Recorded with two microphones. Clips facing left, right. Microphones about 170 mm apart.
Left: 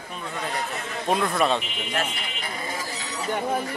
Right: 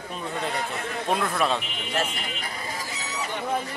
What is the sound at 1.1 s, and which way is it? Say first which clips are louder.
Speech: left 3 dB; centre (ahead or behind).